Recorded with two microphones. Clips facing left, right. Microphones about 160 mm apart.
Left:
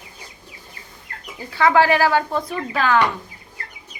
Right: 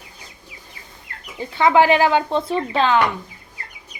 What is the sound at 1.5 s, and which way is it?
A woman's voice, 20° right (ahead or behind).